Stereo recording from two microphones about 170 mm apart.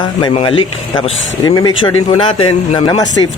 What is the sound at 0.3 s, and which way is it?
Speech, 30° left (ahead or behind).